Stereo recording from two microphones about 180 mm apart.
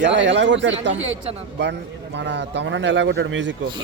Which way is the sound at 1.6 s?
80° right.